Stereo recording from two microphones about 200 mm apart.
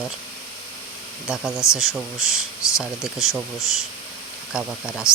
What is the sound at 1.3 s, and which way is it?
Speech, 5° right (ahead or behind).